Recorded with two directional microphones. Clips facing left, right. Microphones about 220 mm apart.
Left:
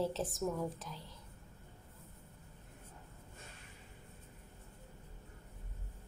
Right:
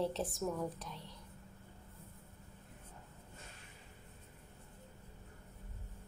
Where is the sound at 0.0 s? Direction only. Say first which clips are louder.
Left 1 dB; centre (ahead or behind).